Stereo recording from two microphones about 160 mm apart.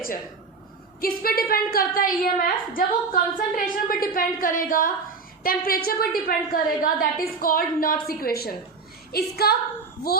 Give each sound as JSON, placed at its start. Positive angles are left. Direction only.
{"t": 1.0, "sound": "a woman's voice", "side_deg": 65}